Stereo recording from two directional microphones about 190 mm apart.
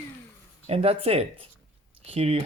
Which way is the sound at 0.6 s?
30° right (ahead or behind).